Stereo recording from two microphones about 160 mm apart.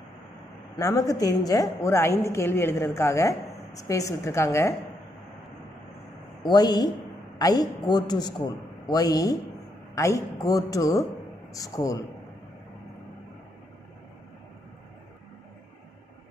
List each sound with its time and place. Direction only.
0.7 s a woman's voice: 20° left (ahead or behind)
6.4 s a woman's voice: 25° left (ahead or behind)